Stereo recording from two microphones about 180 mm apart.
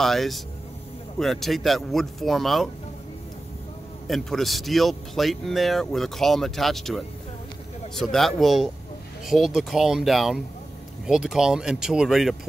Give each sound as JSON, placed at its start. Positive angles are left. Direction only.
{"t": 0.0, "sound": "speech", "side_deg": 0}
{"t": 4.1, "sound": "speech", "side_deg": 0}